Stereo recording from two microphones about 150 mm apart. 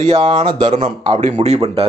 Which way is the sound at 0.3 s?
30° right (ahead or behind).